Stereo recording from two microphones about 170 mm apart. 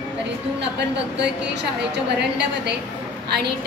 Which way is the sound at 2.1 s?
80° right.